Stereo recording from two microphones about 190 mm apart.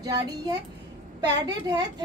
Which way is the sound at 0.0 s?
20° right (ahead or behind).